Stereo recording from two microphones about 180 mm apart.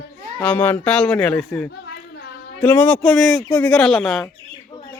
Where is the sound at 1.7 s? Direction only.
70° left (ahead or behind).